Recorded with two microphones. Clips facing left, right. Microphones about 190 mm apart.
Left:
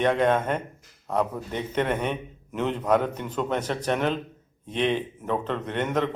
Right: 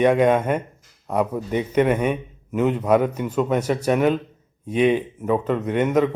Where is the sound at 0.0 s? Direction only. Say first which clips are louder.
Right 5 dB; 10° right (ahead or behind).